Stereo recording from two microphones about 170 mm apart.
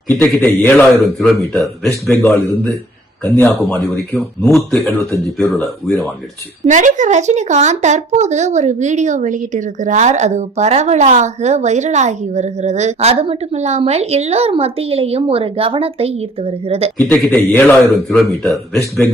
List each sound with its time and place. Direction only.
0.1 s a man's voice: 10° left (ahead or behind)
3.2 s a man's voice: 10° left (ahead or behind)
6.7 s a woman's voice: 45° right (ahead or behind)
17.0 s a man's voice: 10° left (ahead or behind)